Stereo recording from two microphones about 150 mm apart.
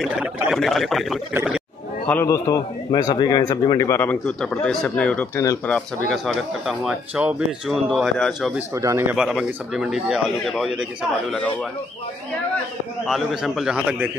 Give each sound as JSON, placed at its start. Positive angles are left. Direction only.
{"t": 0.0, "sound": "speech", "side_deg": -5}
{"t": 2.0, "sound": "a man's voice", "side_deg": 15}
{"t": 8.5, "sound": "speech", "side_deg": -20}
{"t": 9.1, "sound": "speech", "side_deg": -5}
{"t": 13.0, "sound": "speech", "side_deg": 0}